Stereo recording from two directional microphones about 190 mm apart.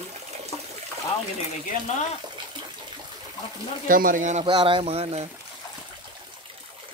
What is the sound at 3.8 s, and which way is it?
Speech, 45° right (ahead or behind).